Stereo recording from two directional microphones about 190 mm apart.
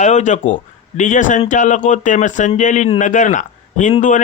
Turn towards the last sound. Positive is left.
turn(degrees=40)  # may be behind; listen again after turning